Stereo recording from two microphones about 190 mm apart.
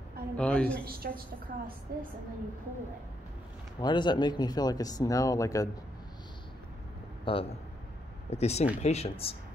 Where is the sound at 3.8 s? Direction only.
25° left (ahead or behind).